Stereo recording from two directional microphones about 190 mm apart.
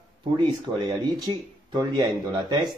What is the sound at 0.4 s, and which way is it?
Speech, 25° right (ahead or behind).